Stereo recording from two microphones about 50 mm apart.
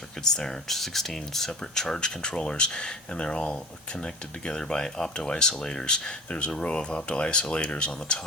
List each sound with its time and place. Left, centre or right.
0.3 s speech: centre